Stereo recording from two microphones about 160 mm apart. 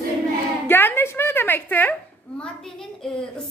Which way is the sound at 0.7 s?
15° left (ahead or behind).